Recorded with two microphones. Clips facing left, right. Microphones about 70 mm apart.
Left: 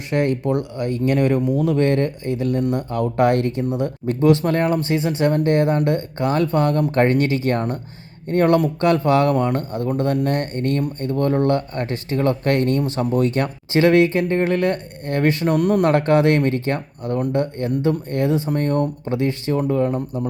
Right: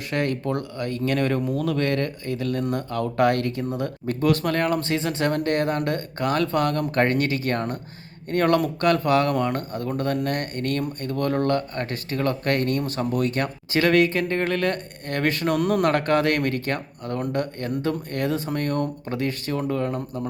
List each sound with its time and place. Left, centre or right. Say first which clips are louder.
0.1 s speech: left 5 dB; left
4.9 s speech: left 4 dB; centre
15.5 s speech: left 4 dB; centre
15.8 s speech: left 4 dB; left